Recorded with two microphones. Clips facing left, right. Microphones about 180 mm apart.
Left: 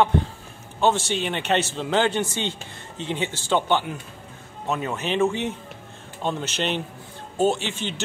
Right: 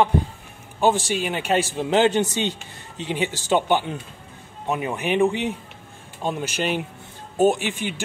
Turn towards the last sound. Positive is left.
turn(degrees=-15)  # may be behind; listen again after turning